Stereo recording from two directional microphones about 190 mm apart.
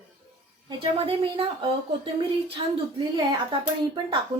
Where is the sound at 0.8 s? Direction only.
30° right (ahead or behind).